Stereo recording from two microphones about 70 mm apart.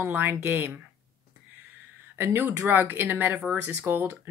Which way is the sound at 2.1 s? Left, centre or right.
Right.